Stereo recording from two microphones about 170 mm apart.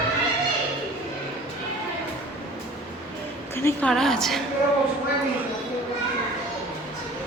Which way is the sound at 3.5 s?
15° left (ahead or behind).